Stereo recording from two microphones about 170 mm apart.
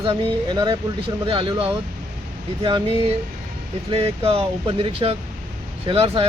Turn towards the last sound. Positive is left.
turn(degrees=-35)  # may be behind; listen again after turning